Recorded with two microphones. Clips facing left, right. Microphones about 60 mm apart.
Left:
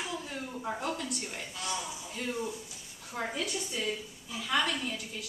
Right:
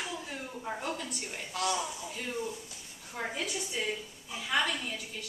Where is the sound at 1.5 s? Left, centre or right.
Right.